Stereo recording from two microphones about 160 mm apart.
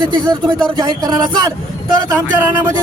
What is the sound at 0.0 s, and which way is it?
Speech, 30° right (ahead or behind).